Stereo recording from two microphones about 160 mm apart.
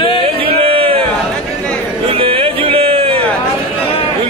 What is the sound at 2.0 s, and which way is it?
Music, 35° right (ahead or behind).